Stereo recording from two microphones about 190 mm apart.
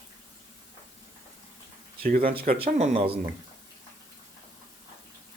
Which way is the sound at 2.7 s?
35° right (ahead or behind).